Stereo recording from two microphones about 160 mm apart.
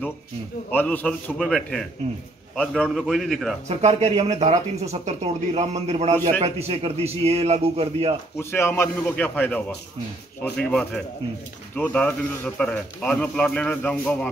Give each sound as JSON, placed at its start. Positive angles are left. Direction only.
{"t": 0.7, "sound": "a man's voice", "side_deg": 10}
{"t": 3.6, "sound": "a man's voice", "side_deg": -40}
{"t": 8.4, "sound": "a man's voice", "side_deg": 15}